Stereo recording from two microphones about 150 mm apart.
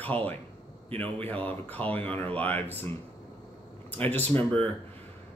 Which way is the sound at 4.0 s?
10° left (ahead or behind).